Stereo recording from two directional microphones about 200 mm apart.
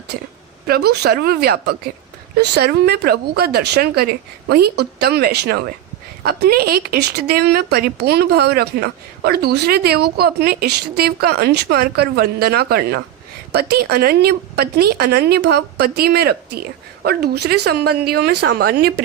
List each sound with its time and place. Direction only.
0.7 s speech: 50° right (ahead or behind)